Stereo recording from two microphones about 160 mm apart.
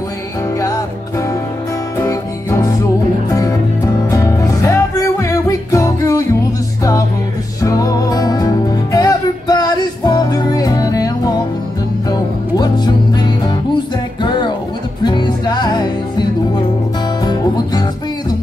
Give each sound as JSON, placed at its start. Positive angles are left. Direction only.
{"t": 2.0, "sound": "music", "side_deg": 20}
{"t": 14.2, "sound": "music", "side_deg": 30}
{"t": 17.2, "sound": "music", "side_deg": 25}